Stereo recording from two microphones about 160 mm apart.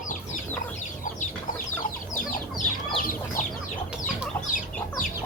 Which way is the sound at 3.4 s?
50° left (ahead or behind).